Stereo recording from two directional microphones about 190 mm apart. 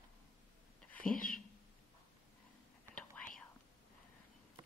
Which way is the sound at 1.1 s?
45° left (ahead or behind).